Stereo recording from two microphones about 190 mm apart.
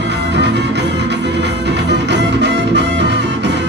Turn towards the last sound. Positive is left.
turn(degrees=-65)  # may be behind; listen again after turning